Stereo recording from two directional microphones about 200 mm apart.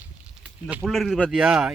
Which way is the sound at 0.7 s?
5° right (ahead or behind).